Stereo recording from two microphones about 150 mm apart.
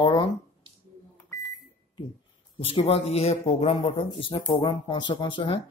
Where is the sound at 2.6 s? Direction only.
40° left (ahead or behind).